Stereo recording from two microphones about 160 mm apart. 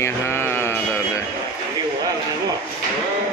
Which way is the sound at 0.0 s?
15° left (ahead or behind).